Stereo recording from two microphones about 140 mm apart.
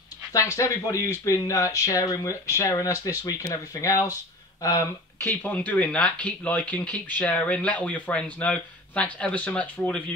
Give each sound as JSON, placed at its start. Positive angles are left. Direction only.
{"t": 0.3, "sound": "speech", "side_deg": 25}
{"t": 5.3, "sound": "speech", "side_deg": 10}